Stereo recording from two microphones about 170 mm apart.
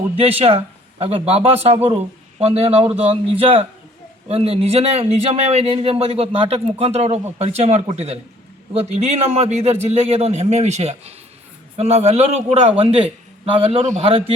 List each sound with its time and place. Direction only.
0.2 s a man's voice: 35° right (ahead or behind)